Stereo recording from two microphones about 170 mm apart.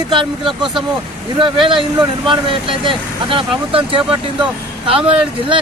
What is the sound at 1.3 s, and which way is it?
Speech, 30° right (ahead or behind).